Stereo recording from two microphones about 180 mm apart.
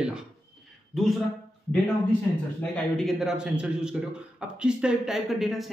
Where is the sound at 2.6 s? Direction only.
Centre (ahead or behind).